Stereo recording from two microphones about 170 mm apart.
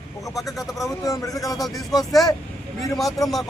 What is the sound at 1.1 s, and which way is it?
Speech, 20° left (ahead or behind).